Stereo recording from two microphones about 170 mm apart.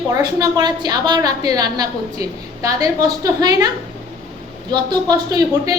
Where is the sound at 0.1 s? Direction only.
20° right (ahead or behind).